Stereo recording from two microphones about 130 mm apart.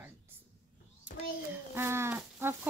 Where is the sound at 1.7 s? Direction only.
20° right (ahead or behind).